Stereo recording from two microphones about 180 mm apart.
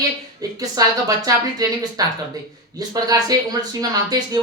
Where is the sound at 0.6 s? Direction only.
20° right (ahead or behind).